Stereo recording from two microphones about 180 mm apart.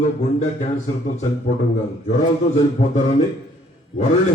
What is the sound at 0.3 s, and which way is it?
Speech, 40° left (ahead or behind).